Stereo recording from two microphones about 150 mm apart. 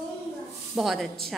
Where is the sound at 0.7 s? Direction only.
Centre (ahead or behind).